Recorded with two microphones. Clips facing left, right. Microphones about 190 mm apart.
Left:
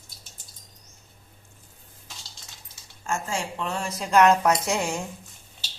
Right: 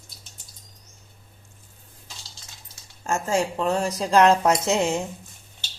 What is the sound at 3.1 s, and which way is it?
Speech, 40° right (ahead or behind).